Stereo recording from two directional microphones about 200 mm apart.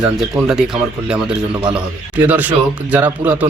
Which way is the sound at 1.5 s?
25° right (ahead or behind).